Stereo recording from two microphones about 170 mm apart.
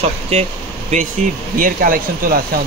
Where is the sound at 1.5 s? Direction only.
55° right (ahead or behind).